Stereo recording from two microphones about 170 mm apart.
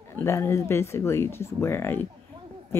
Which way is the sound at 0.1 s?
15° left (ahead or behind).